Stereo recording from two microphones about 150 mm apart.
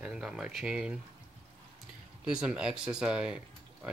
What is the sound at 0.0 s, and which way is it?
Speech, 5° right (ahead or behind).